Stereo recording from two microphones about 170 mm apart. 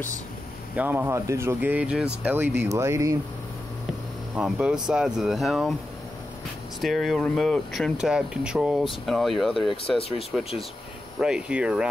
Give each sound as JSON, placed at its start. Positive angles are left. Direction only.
{"t": 0.7, "sound": "speech", "side_deg": -10}
{"t": 4.4, "sound": "speech", "side_deg": -5}
{"t": 6.8, "sound": "speech", "side_deg": 0}
{"t": 9.9, "sound": "speech", "side_deg": 35}
{"t": 11.1, "sound": "speech", "side_deg": -5}